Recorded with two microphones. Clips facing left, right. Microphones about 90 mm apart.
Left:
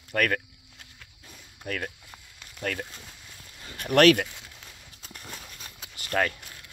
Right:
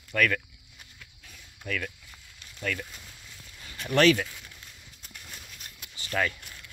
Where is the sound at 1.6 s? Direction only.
40° left (ahead or behind).